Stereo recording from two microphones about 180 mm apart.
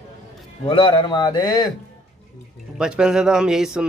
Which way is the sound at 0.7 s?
30° left (ahead or behind).